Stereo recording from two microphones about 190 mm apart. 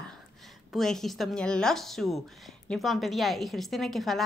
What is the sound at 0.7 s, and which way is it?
Speech, centre (ahead or behind).